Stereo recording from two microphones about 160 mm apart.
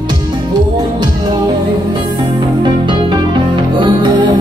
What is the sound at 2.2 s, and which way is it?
Music, 30° right (ahead or behind).